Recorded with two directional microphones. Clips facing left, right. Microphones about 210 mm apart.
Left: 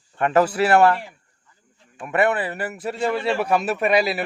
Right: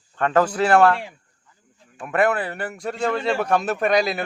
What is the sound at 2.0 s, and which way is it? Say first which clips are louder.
Speech: even; 5° left (ahead or behind).